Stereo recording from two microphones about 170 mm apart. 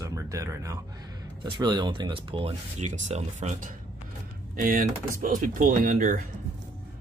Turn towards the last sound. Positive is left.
turn(degrees=-55)  # may be behind; listen again after turning